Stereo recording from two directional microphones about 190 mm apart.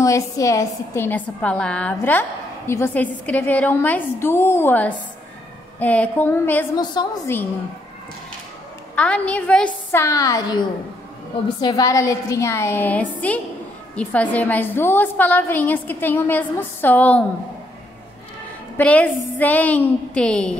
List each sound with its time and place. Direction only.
0.0 s a woman's voice: 15° left (ahead or behind)
6.8 s a woman's voice: 20° left (ahead or behind)
8.9 s a woman's voice: 5° left (ahead or behind)
11.6 s a woman's voice: 20° left (ahead or behind)
18.8 s a woman's voice: 5° left (ahead or behind)